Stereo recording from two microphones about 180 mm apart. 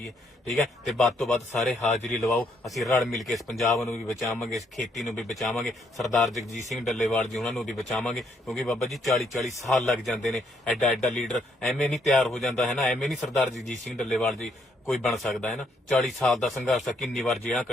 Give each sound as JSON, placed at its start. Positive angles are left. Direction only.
{"t": 0.4, "sound": "speech", "side_deg": 5}
{"t": 4.9, "sound": "speech", "side_deg": 0}
{"t": 6.3, "sound": "a man's voice", "side_deg": 40}
{"t": 6.7, "sound": "speech", "side_deg": 0}